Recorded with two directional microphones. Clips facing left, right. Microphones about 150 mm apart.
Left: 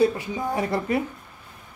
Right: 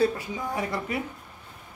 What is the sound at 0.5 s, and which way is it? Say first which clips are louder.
Speech: left 6 dB; 35° left (ahead or behind).